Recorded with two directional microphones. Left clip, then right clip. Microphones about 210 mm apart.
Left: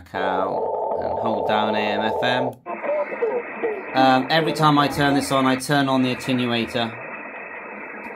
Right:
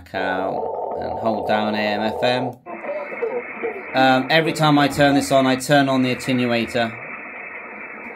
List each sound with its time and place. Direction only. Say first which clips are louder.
0.1 s speech: even; 10° right (ahead or behind)
2.8 s radio: left 5 dB; 40° left (ahead or behind)
3.9 s speech: right 2 dB; 5° right (ahead or behind)